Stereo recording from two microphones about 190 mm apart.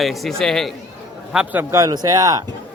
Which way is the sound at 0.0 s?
Centre (ahead or behind).